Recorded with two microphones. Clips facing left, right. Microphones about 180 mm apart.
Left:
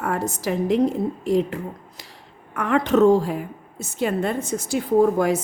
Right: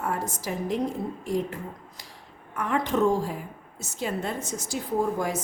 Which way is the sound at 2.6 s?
70° left (ahead or behind).